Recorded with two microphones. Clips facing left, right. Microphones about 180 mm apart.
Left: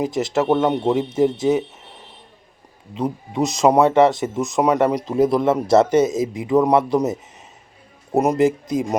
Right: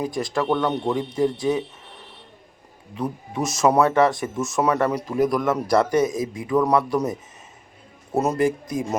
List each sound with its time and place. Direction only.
0.0 s speech: 20° left (ahead or behind)
2.9 s speech: 20° left (ahead or behind)